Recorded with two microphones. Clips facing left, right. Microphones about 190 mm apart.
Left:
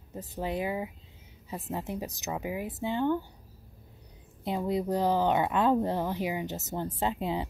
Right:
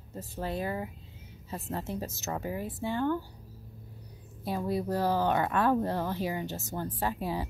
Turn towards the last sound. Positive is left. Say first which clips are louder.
# left 2 dB
turn(degrees=20)  # may be behind; listen again after turning